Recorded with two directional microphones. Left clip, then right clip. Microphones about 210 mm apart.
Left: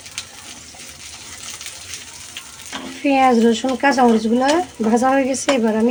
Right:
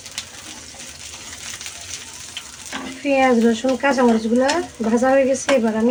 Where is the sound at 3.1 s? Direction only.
40° left (ahead or behind).